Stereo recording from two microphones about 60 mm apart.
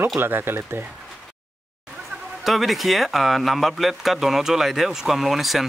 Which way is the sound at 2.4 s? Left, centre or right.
Centre.